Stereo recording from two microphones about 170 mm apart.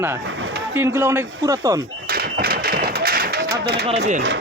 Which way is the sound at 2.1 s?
65° right (ahead or behind).